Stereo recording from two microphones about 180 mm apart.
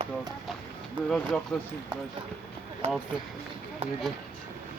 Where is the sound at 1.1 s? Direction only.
5° left (ahead or behind).